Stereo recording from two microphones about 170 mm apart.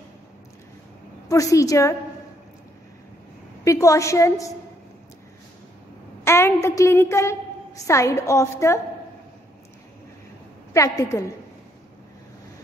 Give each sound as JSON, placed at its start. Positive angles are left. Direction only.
{"t": 1.3, "sound": "a woman's voice", "side_deg": 20}
{"t": 3.6, "sound": "a woman's voice", "side_deg": 20}
{"t": 6.2, "sound": "a woman's voice", "side_deg": 15}
{"t": 10.7, "sound": "a woman's voice", "side_deg": 20}